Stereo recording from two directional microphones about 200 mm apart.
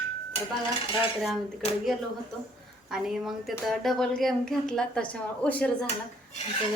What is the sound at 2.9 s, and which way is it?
Speech, centre (ahead or behind).